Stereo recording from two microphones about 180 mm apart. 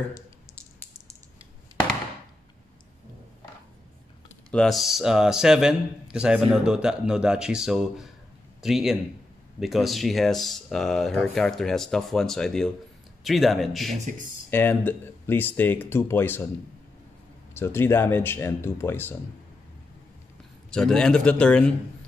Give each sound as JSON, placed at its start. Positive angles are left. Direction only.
{"t": 4.5, "sound": "speech", "side_deg": 5}
{"t": 14.5, "sound": "speech", "side_deg": 10}
{"t": 17.6, "sound": "speech", "side_deg": 15}
{"t": 20.7, "sound": "speech", "side_deg": 5}